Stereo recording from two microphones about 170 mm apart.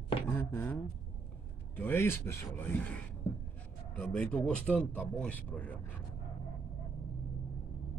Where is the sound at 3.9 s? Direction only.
5° left (ahead or behind).